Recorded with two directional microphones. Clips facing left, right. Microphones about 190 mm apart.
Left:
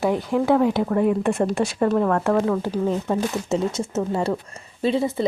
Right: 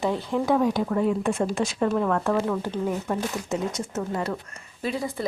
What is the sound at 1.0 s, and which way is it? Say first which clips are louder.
Speech: left 5 dB; 60° left (ahead or behind).